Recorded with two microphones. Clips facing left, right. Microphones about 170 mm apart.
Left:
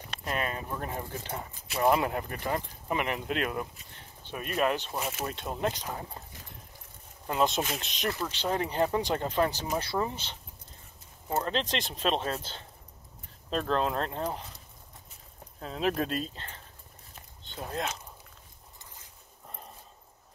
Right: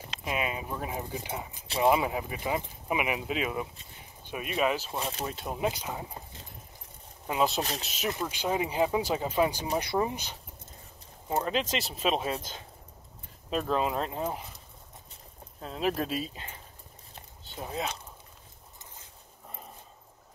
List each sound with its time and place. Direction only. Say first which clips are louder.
0.2 s speech: right 1 dB; 5° right (ahead or behind)
4.9 s speech: even; 30° right (ahead or behind)
5.2 s speech: right 1 dB; 5° right (ahead or behind)
7.2 s speech: even; 5° right (ahead or behind)
15.6 s speech: left 1 dB; centre (ahead or behind)